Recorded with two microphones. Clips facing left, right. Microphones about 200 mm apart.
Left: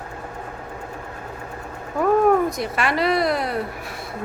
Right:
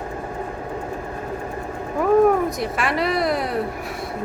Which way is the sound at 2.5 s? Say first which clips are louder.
Even; centre (ahead or behind).